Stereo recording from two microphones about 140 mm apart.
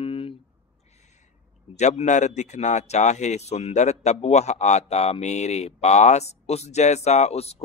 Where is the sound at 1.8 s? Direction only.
55° left (ahead or behind).